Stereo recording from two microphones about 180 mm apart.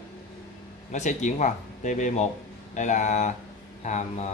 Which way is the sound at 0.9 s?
40° left (ahead or behind).